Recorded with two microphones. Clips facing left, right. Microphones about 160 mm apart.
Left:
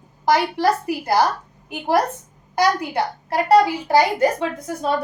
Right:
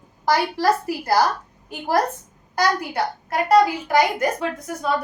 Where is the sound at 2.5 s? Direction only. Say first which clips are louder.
Left 2 dB; 30° left (ahead or behind).